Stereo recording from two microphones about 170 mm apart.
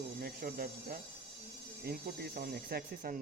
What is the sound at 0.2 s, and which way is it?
Speech, 60° right (ahead or behind).